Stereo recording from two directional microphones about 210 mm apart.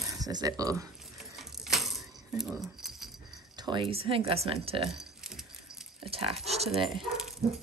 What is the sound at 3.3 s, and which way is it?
Speech, 20° right (ahead or behind).